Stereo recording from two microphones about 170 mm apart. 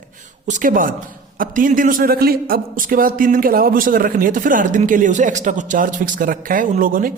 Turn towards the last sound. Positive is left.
turn(degrees=-55)  # may be behind; listen again after turning